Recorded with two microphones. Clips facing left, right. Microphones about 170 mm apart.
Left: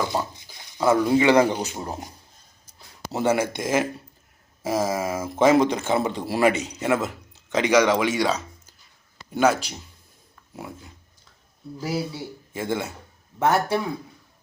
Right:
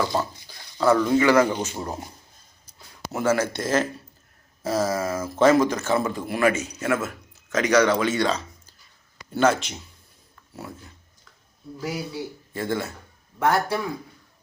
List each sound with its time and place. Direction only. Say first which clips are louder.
0.0 s speech: right 1 dB; 15° left (ahead or behind)
3.1 s speech: left 1 dB; 15° left (ahead or behind)
11.8 s speech: left 3 dB; 30° left (ahead or behind)
12.5 s speech: even; 15° left (ahead or behind)